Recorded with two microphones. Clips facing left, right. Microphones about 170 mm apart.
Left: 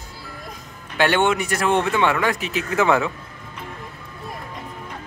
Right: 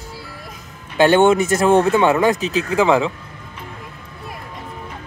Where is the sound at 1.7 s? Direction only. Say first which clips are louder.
Right 5 dB; 40° right (ahead or behind).